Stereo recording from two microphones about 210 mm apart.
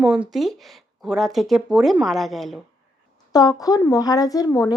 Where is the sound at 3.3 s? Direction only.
20° left (ahead or behind).